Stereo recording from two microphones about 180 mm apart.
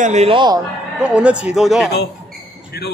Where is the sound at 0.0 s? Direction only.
40° right (ahead or behind).